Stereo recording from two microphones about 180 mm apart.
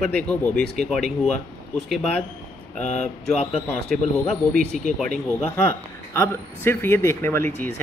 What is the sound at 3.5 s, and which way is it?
Speech, 5° left (ahead or behind).